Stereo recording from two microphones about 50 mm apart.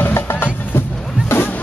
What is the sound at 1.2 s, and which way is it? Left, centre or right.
Music, left.